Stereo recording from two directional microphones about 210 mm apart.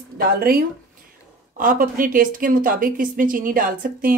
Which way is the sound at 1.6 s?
40° right (ahead or behind).